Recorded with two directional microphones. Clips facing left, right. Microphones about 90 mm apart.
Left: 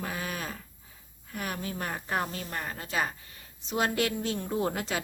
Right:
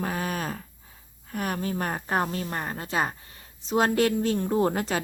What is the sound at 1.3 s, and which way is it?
A woman's voice, 50° right (ahead or behind).